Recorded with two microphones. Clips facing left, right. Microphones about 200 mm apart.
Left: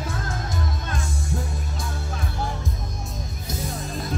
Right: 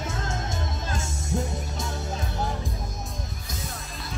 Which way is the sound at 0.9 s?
25° right (ahead or behind).